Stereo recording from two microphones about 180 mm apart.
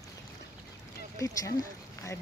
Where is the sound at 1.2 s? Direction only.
15° left (ahead or behind).